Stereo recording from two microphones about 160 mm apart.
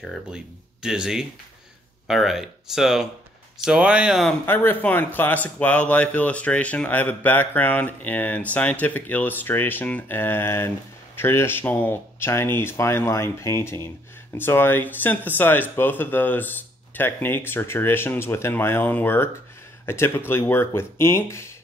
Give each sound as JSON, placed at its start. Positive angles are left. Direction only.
{"t": 0.0, "sound": "speech", "side_deg": 0}
{"t": 4.5, "sound": "speech", "side_deg": 15}